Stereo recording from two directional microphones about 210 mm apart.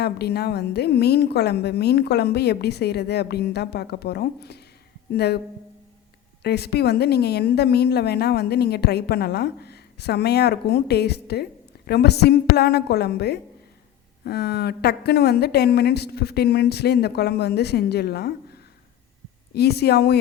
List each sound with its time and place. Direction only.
0.0 s a woman's voice: 50° left (ahead or behind)
6.4 s a woman's voice: 50° left (ahead or behind)
19.5 s a woman's voice: 50° left (ahead or behind)